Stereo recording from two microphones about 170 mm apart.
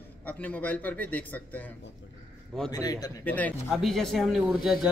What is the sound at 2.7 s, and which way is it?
Speech, 20° left (ahead or behind).